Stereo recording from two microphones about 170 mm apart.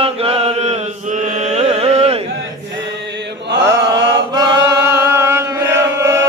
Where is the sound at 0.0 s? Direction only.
35° right (ahead or behind).